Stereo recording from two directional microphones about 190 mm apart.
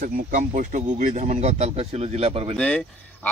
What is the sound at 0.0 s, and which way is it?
Speech, 45° right (ahead or behind).